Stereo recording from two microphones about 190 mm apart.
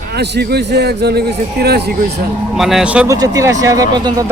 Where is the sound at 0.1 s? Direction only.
60° right (ahead or behind).